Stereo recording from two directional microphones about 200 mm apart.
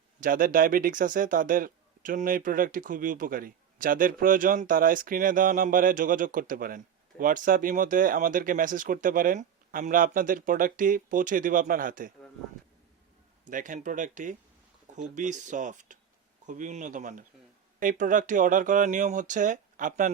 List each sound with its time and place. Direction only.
0.2 s speech: 45° right (ahead or behind)
13.5 s speech: 40° right (ahead or behind)